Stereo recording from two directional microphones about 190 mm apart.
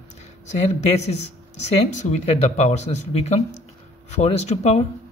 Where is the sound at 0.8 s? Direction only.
35° left (ahead or behind).